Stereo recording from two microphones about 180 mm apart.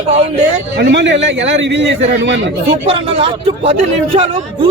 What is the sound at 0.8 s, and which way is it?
A man's voice, 80° right.